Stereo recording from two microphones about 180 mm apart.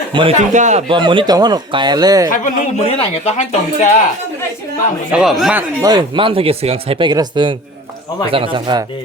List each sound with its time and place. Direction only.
0.1 s speech: 30° right (ahead or behind)
0.3 s speech: 40° right (ahead or behind)
0.9 s speech: 30° right (ahead or behind)
2.3 s a man's voice: 45° left (ahead or behind)
5.1 s speech: centre (ahead or behind)
5.8 s speech: 20° right (ahead or behind)